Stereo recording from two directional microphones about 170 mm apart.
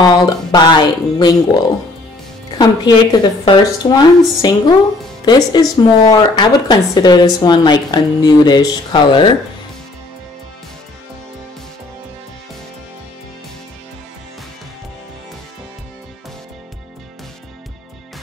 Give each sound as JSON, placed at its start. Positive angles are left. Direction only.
{"t": 0.0, "sound": "speech", "side_deg": 25}